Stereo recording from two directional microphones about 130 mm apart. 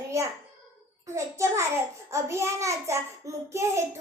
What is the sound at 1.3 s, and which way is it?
A child's voice, 25° right (ahead or behind).